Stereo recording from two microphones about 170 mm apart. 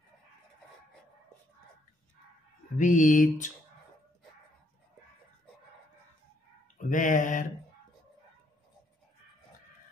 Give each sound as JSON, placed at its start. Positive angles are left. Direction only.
{"t": 2.8, "sound": "mantra", "side_deg": 50}
{"t": 6.8, "sound": "mantra", "side_deg": 50}